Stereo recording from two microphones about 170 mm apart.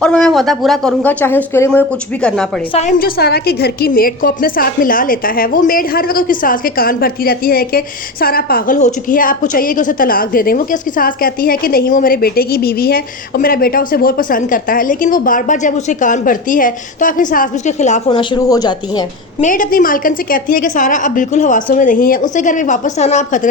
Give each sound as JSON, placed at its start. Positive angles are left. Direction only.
{"t": 0.0, "sound": "speech", "side_deg": 5}
{"t": 3.0, "sound": "a woman's voice", "side_deg": 70}
{"t": 18.1, "sound": "speech", "side_deg": 30}
{"t": 19.4, "sound": "a woman's voice", "side_deg": 50}